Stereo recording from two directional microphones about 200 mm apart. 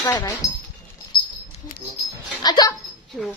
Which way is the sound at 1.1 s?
25° left (ahead or behind).